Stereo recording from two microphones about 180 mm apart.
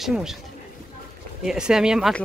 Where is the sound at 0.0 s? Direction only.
Centre (ahead or behind).